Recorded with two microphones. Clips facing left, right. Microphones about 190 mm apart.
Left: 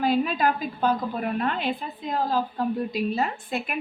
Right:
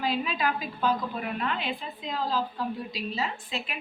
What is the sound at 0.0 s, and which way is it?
A woman's voice, 50° left (ahead or behind).